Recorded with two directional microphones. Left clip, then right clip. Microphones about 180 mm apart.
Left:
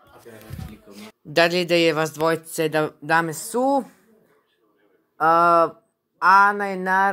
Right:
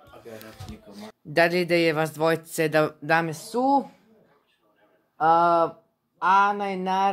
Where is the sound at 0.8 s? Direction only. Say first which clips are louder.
Left 1 dB; centre (ahead or behind).